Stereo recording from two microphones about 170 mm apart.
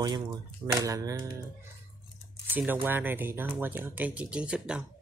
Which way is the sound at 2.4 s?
10° right (ahead or behind).